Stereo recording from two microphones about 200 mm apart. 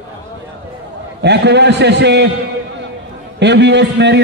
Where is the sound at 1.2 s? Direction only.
55° right (ahead or behind).